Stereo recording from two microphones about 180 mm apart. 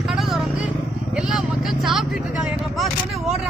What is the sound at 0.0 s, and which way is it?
Vehicle, centre (ahead or behind).